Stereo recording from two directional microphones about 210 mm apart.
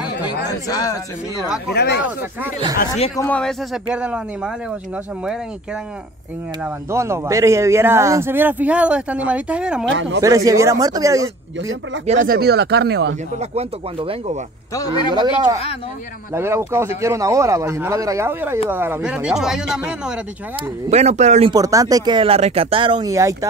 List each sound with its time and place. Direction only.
0.5 s a man's voice: 15° left (ahead or behind)
1.7 s speech: 55° left (ahead or behind)
3.2 s speech: 5° left (ahead or behind)
6.6 s speech: 10° right (ahead or behind)
9.8 s speech: 60° right (ahead or behind)
10.2 s speech: 15° right (ahead or behind)
12.3 s speech: 50° right (ahead or behind)
13.4 s speech: 30° right (ahead or behind)
14.7 s a man's voice: 15° left (ahead or behind)
15.1 s speech: 20° right (ahead or behind); by 20.2 s 5° right (ahead or behind)
20.9 s speech: 30° right (ahead or behind)
21.5 s speech: 15° right (ahead or behind)